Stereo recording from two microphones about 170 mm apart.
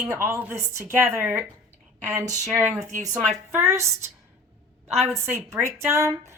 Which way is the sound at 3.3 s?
15° right (ahead or behind).